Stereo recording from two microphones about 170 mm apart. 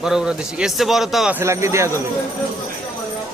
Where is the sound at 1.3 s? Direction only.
15° right (ahead or behind).